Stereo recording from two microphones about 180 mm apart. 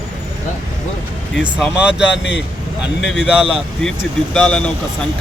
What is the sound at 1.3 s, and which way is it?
Speech, 5° right (ahead or behind).